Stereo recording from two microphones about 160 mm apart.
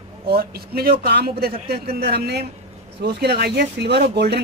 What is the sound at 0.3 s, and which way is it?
Speech, 75° right (ahead or behind).